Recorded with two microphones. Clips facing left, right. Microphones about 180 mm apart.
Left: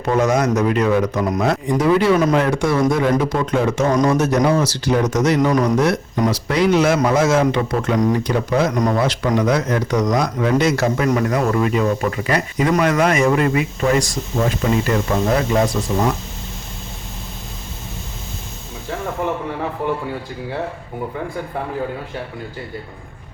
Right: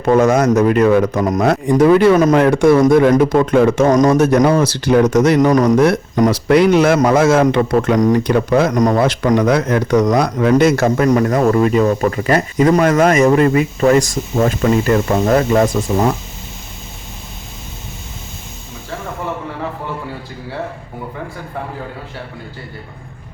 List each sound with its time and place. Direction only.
0.0 s speech: 50° right (ahead or behind)
8.2 s speech: 60° right (ahead or behind); by 9.0 s 40° right (ahead or behind)
9.0 s speech: 55° right (ahead or behind)
10.5 s speech: 50° right (ahead or behind)